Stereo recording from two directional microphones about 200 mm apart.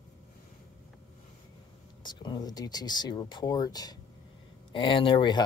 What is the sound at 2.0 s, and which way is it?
Speech, 20° left (ahead or behind).